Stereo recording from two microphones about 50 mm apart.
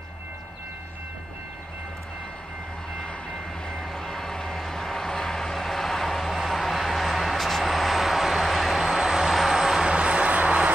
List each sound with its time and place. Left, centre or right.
3.0 s vehicle: centre
9.9 s vehicle: right